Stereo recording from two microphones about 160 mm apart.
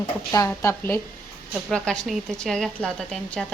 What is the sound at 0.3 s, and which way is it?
A woman's voice, 20° left (ahead or behind).